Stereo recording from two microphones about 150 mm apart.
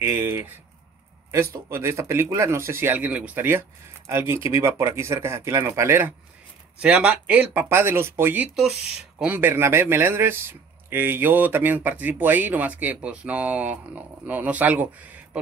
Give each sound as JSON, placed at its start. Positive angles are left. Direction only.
{"t": 0.0, "sound": "speech", "side_deg": -20}